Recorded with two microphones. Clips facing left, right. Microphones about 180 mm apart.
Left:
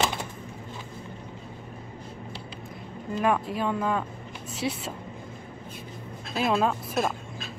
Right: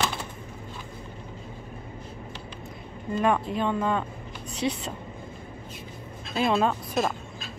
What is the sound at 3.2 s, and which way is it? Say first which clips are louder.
Speech: right 1 dB; 5° left (ahead or behind).